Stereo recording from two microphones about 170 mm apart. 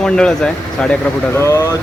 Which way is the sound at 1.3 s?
15° left (ahead or behind).